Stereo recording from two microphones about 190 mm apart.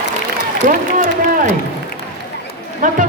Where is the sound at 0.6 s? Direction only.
45° right (ahead or behind).